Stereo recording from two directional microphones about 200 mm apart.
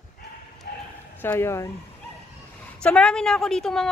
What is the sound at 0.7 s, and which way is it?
Bow-wow, 50° left (ahead or behind).